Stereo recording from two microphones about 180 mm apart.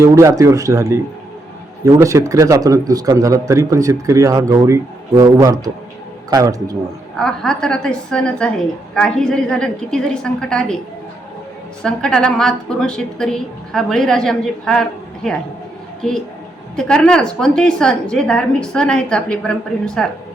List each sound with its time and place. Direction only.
0.0 s a man's voice: 15° right (ahead or behind)
7.2 s a woman's voice: 5° left (ahead or behind)
11.8 s a woman's voice: 5° left (ahead or behind)